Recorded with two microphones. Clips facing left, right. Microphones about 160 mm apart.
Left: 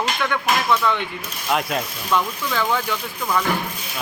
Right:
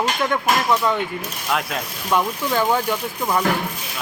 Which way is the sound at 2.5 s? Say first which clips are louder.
Right 3 dB; 35° right (ahead or behind).